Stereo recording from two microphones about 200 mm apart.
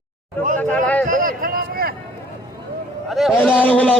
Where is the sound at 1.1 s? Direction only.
45° right (ahead or behind).